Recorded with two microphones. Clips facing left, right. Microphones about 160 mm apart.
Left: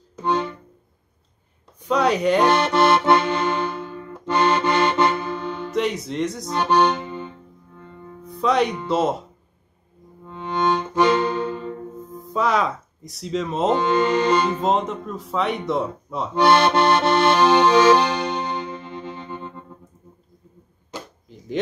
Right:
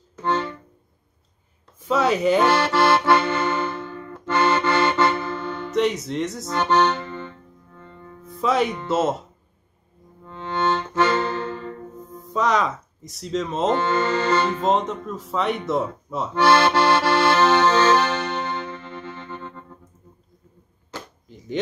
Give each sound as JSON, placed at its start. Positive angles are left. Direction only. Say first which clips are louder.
{"t": 0.2, "sound": "music", "louder": "left 1 dB", "side_deg": 15}
{"t": 1.8, "sound": "speech", "louder": "left 1 dB", "side_deg": 0}
{"t": 2.4, "sound": "accordion", "louder": "left 1 dB", "side_deg": 15}
{"t": 5.7, "sound": "speech", "louder": "right 3 dB", "side_deg": 0}
{"t": 6.5, "sound": "accordion", "louder": "left 1 dB", "side_deg": 10}
{"t": 8.4, "sound": "speech", "louder": "left 1 dB", "side_deg": 0}
{"t": 10.2, "sound": "accordion", "louder": "left 1 dB", "side_deg": 15}
{"t": 12.1, "sound": "speech", "louder": "even", "side_deg": 0}
{"t": 13.7, "sound": "speech", "louder": "left 3 dB", "side_deg": 15}
{"t": 14.6, "sound": "speech", "louder": "even", "side_deg": 0}
{"t": 16.3, "sound": "accordion", "louder": "left 1 dB", "side_deg": 15}